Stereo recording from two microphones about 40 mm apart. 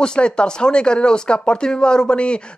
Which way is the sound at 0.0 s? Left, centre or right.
Left.